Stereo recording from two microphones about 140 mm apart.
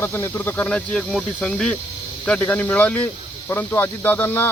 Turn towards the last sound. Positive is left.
turn(degrees=15)  # may be behind; listen again after turning